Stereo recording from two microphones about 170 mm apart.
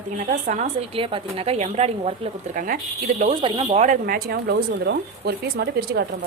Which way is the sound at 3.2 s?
35° right (ahead or behind).